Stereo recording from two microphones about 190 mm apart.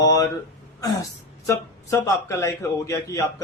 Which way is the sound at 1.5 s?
15° left (ahead or behind).